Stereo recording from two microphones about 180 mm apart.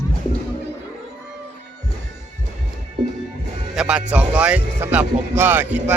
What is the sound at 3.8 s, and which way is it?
Speech, 5° right (ahead or behind).